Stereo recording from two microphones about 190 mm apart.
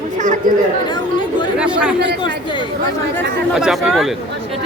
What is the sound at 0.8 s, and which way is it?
Chatter, 25° left (ahead or behind).